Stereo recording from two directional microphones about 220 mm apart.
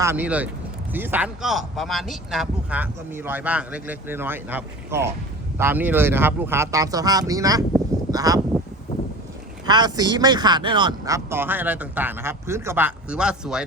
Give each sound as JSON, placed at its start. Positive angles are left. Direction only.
{"t": 0.0, "sound": "a man's voice", "side_deg": -10}
{"t": 9.6, "sound": "a man's voice", "side_deg": -20}